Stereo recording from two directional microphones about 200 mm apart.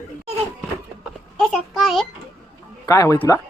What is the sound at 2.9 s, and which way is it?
Speech, 15° left (ahead or behind).